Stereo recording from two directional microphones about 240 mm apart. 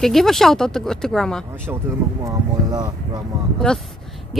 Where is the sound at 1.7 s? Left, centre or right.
Centre.